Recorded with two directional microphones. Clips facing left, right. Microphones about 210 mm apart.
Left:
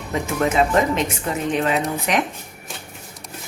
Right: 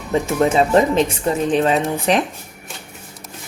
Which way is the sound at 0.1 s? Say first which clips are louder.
Right 5 dB; 30° right (ahead or behind).